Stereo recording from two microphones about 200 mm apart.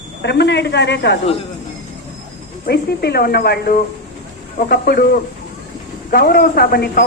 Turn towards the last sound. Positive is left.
turn(degrees=50)  # may be behind; listen again after turning